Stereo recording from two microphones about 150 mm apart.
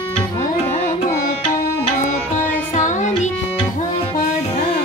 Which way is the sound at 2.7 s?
55° left (ahead or behind).